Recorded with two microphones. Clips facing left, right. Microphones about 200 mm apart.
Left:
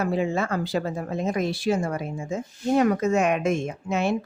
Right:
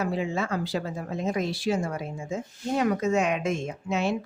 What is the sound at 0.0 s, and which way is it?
Speech, 50° left (ahead or behind).